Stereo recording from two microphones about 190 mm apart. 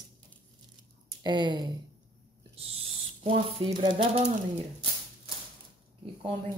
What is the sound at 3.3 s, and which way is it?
Speech, 30° right (ahead or behind).